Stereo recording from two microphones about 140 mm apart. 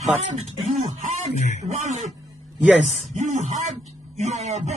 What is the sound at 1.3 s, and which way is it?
Speech, 55° left (ahead or behind).